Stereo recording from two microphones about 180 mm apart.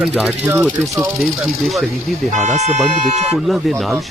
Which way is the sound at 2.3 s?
40° right (ahead or behind).